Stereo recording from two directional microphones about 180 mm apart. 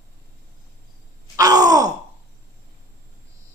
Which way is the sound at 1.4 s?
20° right (ahead or behind).